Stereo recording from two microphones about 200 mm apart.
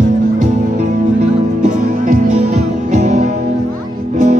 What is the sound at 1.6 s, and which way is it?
Music, 40° right (ahead or behind).